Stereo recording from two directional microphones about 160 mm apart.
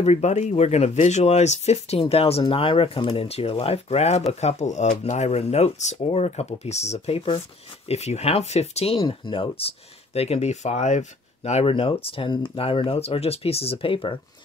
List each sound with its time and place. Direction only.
0.0 s speech: 45° left (ahead or behind)